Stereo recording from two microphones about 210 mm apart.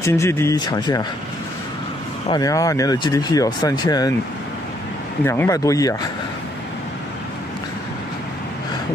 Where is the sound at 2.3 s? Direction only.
15° left (ahead or behind).